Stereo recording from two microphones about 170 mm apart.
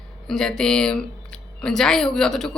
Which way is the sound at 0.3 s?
5° left (ahead or behind).